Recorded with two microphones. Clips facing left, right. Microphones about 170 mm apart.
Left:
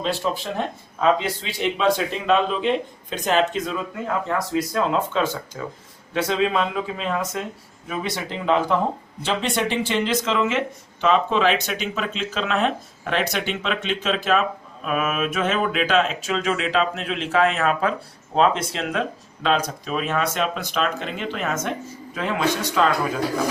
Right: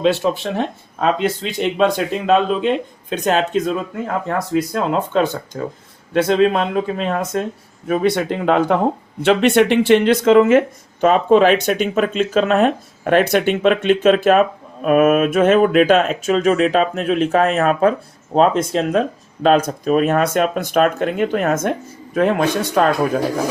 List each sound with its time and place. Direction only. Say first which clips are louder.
0.0 s speech: right 8 dB; 70° right (ahead or behind)